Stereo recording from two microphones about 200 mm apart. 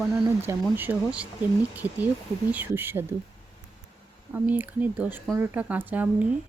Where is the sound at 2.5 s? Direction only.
10° right (ahead or behind).